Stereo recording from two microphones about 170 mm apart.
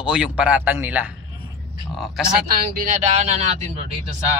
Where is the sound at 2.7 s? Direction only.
50° right (ahead or behind).